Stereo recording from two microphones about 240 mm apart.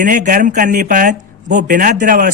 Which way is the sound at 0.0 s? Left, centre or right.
Right.